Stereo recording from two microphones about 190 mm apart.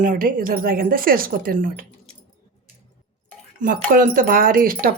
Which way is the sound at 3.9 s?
45° right (ahead or behind).